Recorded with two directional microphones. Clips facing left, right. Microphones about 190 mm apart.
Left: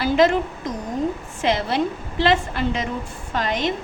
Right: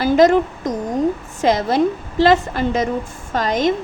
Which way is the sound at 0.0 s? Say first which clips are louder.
Right 5 dB; 45° right (ahead or behind).